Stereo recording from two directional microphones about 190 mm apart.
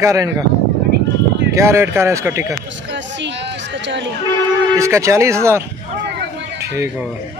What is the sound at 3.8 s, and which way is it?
Speech, 70° right (ahead or behind).